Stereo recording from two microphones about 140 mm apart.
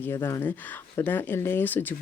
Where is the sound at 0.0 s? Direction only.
15° left (ahead or behind).